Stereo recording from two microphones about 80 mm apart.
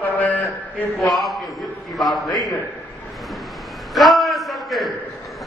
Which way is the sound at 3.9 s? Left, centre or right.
Centre.